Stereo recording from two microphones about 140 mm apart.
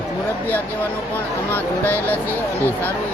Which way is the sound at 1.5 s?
15° left (ahead or behind).